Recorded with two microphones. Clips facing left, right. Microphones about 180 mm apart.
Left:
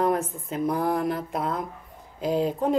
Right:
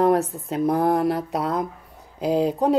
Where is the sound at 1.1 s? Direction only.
85° right.